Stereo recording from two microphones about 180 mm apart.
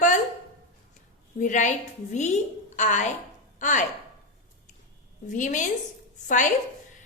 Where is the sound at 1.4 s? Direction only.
45° left (ahead or behind).